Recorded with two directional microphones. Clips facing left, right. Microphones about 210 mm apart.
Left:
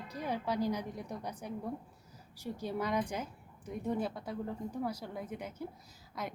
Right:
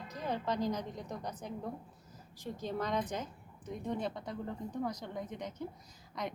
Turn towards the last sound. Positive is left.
turn(degrees=5)  # may be behind; listen again after turning